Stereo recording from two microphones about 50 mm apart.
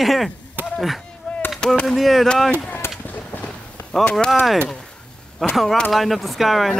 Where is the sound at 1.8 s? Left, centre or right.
Centre.